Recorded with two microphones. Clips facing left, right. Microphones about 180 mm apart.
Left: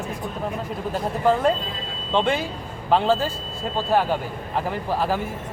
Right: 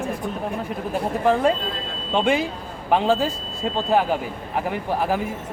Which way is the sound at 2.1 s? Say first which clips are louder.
Right 2 dB; 15° right (ahead or behind).